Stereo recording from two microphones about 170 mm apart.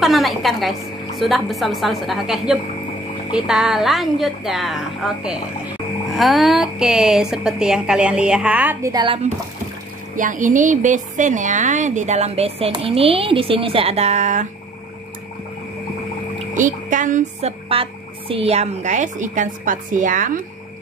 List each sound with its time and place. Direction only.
0.0 s a woman's voice: centre (ahead or behind)
8.9 s speech: 30° right (ahead or behind)
10.1 s a woman's voice: 50° right (ahead or behind)
16.5 s a woman's voice: 50° right (ahead or behind)